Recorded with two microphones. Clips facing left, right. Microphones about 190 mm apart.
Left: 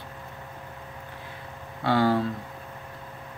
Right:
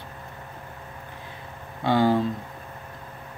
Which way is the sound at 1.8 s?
20° right (ahead or behind).